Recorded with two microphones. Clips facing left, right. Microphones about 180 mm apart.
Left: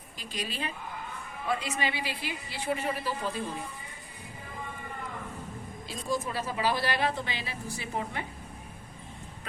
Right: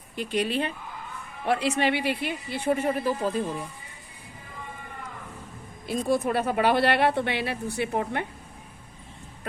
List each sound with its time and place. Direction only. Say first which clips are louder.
0.2 s a woman's voice: right 10 dB; 60° right (ahead or behind)
1.5 s a woman's voice: right 7 dB; 75° right (ahead or behind); by 3.4 s 45° right (ahead or behind)
5.9 s a woman's voice: right 8 dB; 60° right (ahead or behind)